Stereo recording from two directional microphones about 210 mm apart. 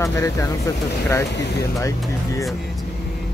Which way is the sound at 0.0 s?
15° left (ahead or behind).